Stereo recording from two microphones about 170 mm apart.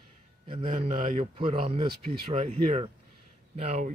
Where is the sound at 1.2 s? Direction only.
35° right (ahead or behind).